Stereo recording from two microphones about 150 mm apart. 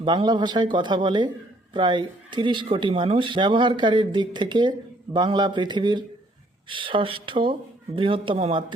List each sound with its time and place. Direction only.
0.0 s speech: 30° right (ahead or behind)